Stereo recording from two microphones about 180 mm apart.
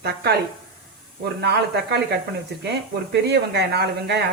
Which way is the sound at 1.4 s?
65° right (ahead or behind).